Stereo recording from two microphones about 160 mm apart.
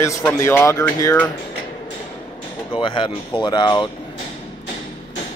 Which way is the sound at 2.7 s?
35° left (ahead or behind).